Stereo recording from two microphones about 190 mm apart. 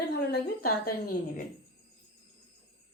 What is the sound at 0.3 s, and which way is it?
Speech, 50° left (ahead or behind).